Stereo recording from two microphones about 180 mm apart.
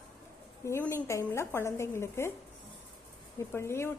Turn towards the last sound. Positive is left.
turn(degrees=15)  # may be behind; listen again after turning